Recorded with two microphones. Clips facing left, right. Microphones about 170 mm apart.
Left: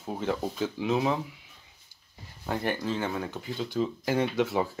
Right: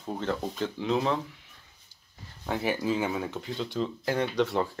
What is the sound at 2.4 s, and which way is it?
Speech, centre (ahead or behind).